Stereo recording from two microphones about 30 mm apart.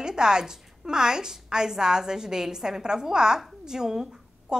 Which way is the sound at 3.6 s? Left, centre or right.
Centre.